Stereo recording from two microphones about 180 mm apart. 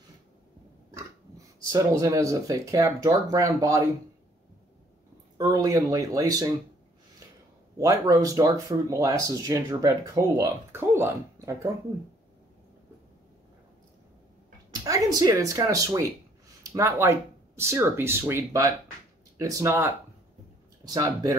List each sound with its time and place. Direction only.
1.6 s speech: 20° right (ahead or behind)
5.4 s speech: 20° right (ahead or behind)
7.7 s speech: 20° right (ahead or behind)
14.9 s speech: 20° right (ahead or behind)